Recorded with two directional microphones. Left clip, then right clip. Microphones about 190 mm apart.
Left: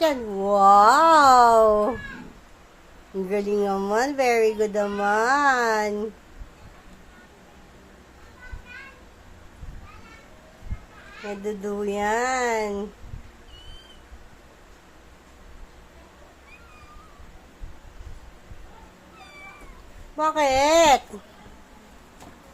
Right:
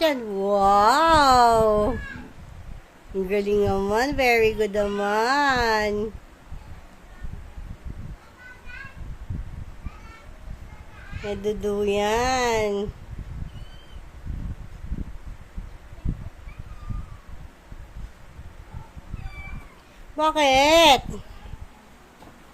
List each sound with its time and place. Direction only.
0.0 s a sound: 10° right (ahead or behind)
3.2 s speech: 15° right (ahead or behind)
11.3 s speech: 25° right (ahead or behind)
20.1 s speech: 30° right (ahead or behind)